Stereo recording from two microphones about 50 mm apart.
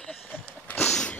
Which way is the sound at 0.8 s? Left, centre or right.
Centre.